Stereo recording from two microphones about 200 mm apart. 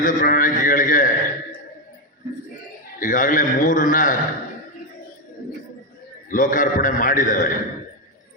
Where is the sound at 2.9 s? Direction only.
40° left (ahead or behind).